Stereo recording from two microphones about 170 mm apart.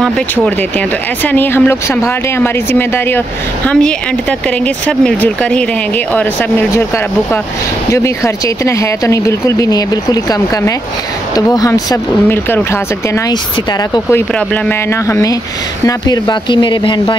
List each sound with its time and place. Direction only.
0.7 s speech: 10° left (ahead or behind)
7.9 s speech: 15° left (ahead or behind)
14.1 s speech: 10° left (ahead or behind)